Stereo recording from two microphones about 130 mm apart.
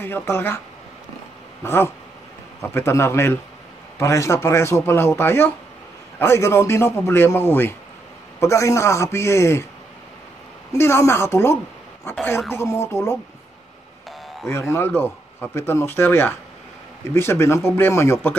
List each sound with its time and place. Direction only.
0.0 s speech: 20° left (ahead or behind)
1.6 s dog: 20° left (ahead or behind)
2.6 s a man's voice: 20° left (ahead or behind)
10.7 s a man's voice: 20° left (ahead or behind)
12.5 s a man's voice: 20° left (ahead or behind)
14.5 s a man's voice: 20° left (ahead or behind)